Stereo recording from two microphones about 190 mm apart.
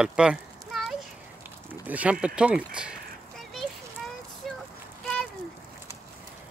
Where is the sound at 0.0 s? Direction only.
5° right (ahead or behind).